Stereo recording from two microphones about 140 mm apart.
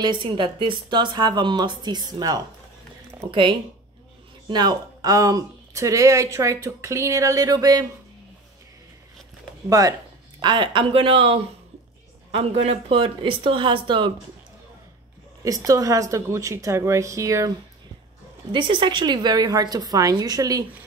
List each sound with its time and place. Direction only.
0.0 s speech: 35° right (ahead or behind)
9.7 s speech: 25° right (ahead or behind)
15.4 s speech: 25° right (ahead or behind)
18.5 s speech: 35° right (ahead or behind)